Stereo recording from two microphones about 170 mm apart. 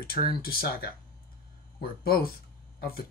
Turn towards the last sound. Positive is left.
turn(degrees=60)  # may be behind; listen again after turning